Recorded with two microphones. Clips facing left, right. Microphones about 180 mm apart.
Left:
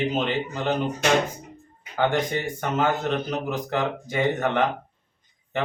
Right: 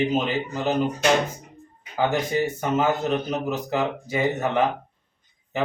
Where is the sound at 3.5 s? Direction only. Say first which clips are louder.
Right 1 dB; 5° right (ahead or behind).